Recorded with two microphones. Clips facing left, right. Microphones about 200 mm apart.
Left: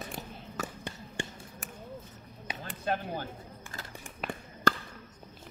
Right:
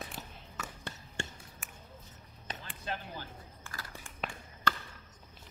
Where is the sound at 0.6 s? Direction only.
40° left (ahead or behind).